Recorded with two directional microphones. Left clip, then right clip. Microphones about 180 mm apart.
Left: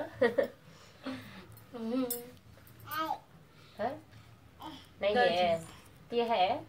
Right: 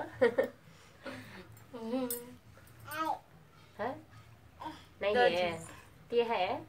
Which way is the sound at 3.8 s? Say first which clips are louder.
Left 2 dB; 15° right (ahead or behind).